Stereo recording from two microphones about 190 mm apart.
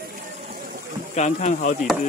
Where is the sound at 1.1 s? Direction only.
40° left (ahead or behind).